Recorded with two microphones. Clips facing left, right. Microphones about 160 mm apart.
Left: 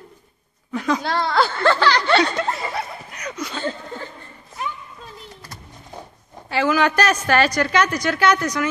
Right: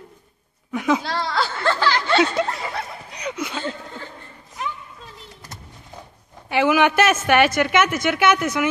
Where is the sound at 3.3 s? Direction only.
5° right (ahead or behind).